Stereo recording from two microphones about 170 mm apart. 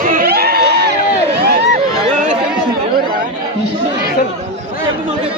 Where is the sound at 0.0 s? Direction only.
55° right (ahead or behind); by 0.9 s 75° right (ahead or behind).